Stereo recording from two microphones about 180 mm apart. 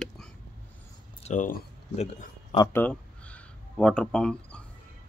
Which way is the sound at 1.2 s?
45° left (ahead or behind).